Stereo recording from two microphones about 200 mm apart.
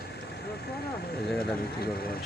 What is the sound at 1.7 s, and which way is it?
Speech, 50° left (ahead or behind).